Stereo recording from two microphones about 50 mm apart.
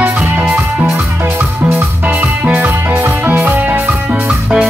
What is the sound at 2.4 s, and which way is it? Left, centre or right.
Music, right.